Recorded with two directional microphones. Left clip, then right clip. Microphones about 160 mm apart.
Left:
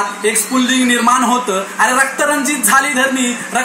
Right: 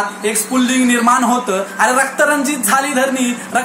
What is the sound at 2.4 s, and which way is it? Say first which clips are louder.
Speech: left 3 dB; 25° right (ahead or behind).